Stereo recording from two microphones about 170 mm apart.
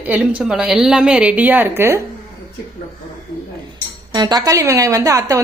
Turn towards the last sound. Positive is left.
turn(degrees=-20)  # may be behind; listen again after turning